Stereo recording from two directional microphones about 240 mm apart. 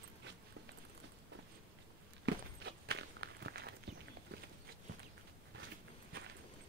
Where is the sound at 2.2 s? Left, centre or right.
Right.